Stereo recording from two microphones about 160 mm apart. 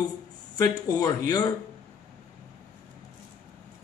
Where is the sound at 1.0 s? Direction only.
25° left (ahead or behind).